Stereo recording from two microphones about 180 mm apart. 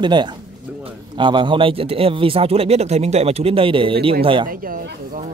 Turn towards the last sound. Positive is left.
turn(degrees=-50)  # may be behind; listen again after turning